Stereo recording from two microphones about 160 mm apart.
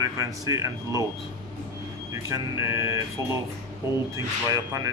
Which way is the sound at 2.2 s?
20° right (ahead or behind).